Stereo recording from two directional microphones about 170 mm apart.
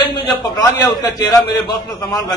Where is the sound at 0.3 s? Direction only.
25° left (ahead or behind).